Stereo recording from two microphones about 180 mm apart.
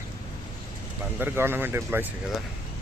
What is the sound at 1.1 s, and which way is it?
Speech, 10° right (ahead or behind).